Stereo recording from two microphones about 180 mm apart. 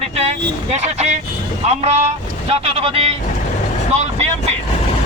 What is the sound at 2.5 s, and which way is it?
Speech, 35° right (ahead or behind).